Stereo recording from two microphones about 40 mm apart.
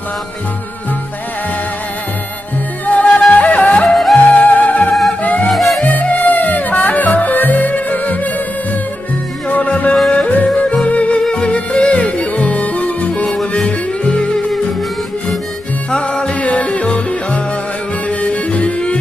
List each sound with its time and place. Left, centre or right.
2.8 s music: left
3.9 s music: centre
4.4 s music: left
5.5 s music: centre
5.8 s music: left
9.5 s music: left
10.3 s yodeling: left
10.8 s music: left
13.2 s music: left
15.9 s music: left